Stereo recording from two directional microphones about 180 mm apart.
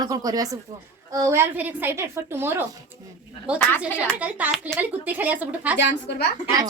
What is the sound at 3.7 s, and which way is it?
Speech, 10° left (ahead or behind).